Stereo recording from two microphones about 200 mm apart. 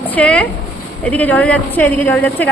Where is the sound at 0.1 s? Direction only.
5° left (ahead or behind).